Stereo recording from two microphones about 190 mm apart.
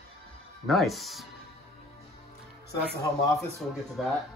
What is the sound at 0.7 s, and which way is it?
Speech, centre (ahead or behind).